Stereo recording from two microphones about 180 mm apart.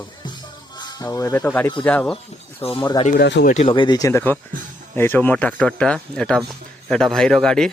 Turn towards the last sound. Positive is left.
turn(degrees=5)  # may be behind; listen again after turning